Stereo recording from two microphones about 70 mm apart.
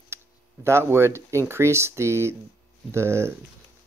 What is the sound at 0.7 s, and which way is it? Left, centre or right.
Speech, right.